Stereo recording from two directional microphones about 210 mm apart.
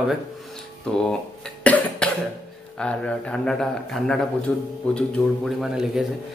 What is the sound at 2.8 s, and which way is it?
Speech, 5° left (ahead or behind).